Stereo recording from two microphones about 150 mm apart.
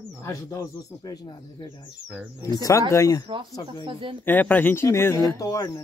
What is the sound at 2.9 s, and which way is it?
Speech, 20° left (ahead or behind).